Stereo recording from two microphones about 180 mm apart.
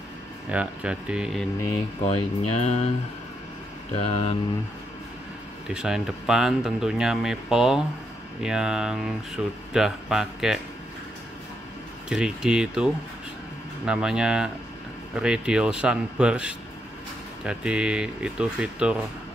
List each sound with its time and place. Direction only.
0.5 s speech: 5° right (ahead or behind)
2.0 s speech: 35° left (ahead or behind)
4.0 s speech: 30° left (ahead or behind)
5.7 s speech: 5° right (ahead or behind)
12.1 s speech: 5° right (ahead or behind)